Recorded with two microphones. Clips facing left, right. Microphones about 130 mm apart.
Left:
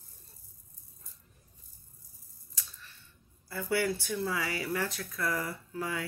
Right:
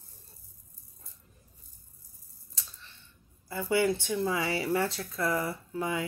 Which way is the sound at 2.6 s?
25° right (ahead or behind).